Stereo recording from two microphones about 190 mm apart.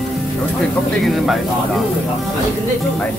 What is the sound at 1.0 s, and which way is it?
Speech, centre (ahead or behind).